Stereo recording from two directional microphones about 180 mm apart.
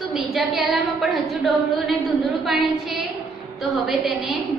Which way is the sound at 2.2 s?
Centre (ahead or behind).